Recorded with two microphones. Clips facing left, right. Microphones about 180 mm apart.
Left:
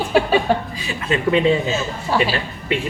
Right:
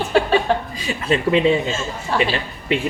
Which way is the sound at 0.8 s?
40° right (ahead or behind).